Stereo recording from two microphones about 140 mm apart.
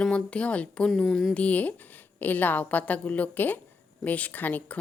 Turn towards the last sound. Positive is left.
turn(degrees=10)  # may be behind; listen again after turning